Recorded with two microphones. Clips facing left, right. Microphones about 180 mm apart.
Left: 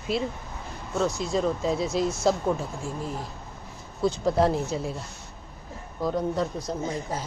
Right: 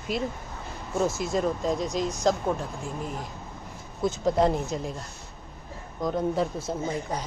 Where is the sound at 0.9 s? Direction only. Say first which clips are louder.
Even; 25° right (ahead or behind).